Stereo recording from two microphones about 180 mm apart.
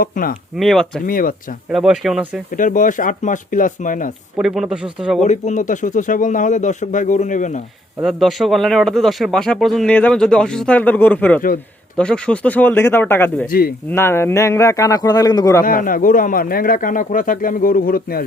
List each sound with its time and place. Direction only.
0.0 s a man's voice: 50° left (ahead or behind)
0.5 s speech: centre (ahead or behind)
1.0 s a man's voice: 50° left (ahead or behind)
1.7 s speech: centre (ahead or behind)
2.6 s a man's voice: 45° left (ahead or behind)
4.4 s speech: 5° right (ahead or behind)
5.2 s a man's voice: 40° left (ahead or behind)
8.0 s speech: centre (ahead or behind)
13.5 s speech: 55° left (ahead or behind)
13.9 s speech: 15° left (ahead or behind)
15.6 s a man's voice: 50° left (ahead or behind)